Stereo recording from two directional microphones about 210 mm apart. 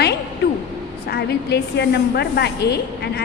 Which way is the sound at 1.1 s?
50° left (ahead or behind).